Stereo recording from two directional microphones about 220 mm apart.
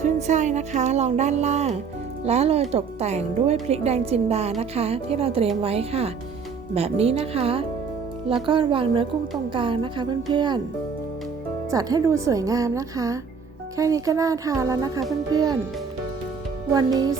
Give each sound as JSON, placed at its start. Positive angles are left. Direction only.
{"t": 0.0, "sound": "music", "side_deg": -30}
{"t": 2.2, "sound": "a woman's voice", "side_deg": -30}
{"t": 11.7, "sound": "a woman's voice", "side_deg": -15}
{"t": 16.7, "sound": "a woman's voice", "side_deg": -15}